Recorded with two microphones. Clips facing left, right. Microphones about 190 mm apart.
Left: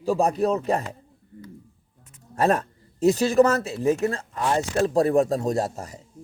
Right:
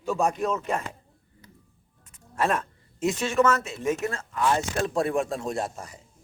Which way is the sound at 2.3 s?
35° left (ahead or behind).